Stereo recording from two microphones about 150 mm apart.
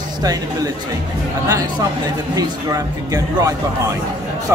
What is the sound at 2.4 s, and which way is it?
Speech, 25° right (ahead or behind).